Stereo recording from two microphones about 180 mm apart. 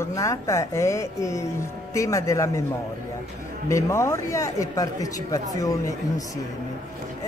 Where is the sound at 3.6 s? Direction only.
15° left (ahead or behind).